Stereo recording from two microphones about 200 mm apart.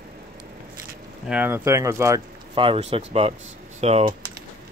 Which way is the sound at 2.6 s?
30° right (ahead or behind).